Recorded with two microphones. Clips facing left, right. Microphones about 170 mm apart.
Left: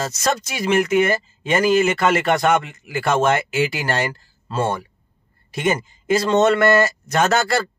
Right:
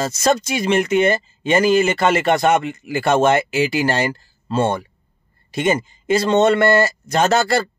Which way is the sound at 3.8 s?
25° right (ahead or behind).